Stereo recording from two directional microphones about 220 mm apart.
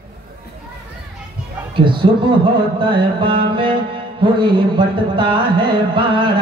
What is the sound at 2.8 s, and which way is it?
Music, 20° right (ahead or behind).